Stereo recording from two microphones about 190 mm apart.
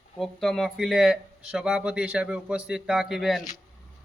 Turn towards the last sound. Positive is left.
turn(degrees=0)  # may be behind; listen again after turning